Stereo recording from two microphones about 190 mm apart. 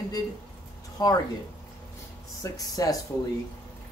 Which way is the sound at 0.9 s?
20° left (ahead or behind).